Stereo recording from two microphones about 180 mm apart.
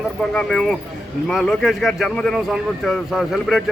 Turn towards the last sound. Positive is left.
turn(degrees=0)  # may be behind; listen again after turning